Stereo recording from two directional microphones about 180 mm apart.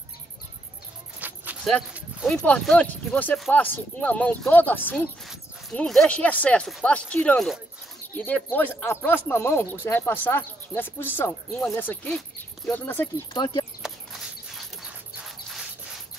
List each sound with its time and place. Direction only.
1.2 s a sound: 10° right (ahead or behind)
1.7 s speech: centre (ahead or behind)
13.3 s speech: 25° left (ahead or behind)